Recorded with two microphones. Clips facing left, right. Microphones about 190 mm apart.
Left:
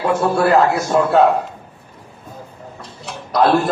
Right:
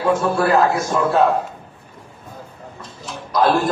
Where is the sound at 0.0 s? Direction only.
65° left (ahead or behind).